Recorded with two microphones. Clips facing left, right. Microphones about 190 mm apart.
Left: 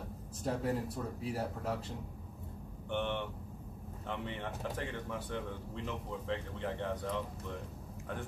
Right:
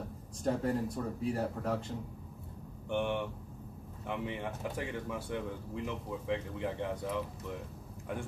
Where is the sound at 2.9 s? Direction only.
10° right (ahead or behind).